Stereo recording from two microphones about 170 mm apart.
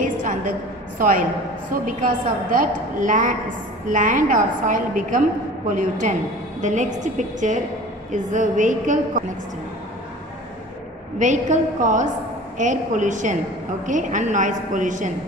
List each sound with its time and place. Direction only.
0.0 s a sound: 50° right (ahead or behind)
0.9 s a man's voice: 55° right (ahead or behind)
11.2 s a woman's voice: 45° right (ahead or behind)